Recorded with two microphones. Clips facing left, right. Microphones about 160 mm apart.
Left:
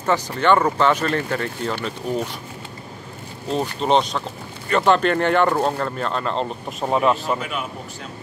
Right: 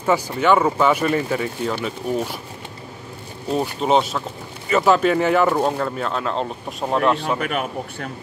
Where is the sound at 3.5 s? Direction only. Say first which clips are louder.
Right 1 dB; 5° right (ahead or behind).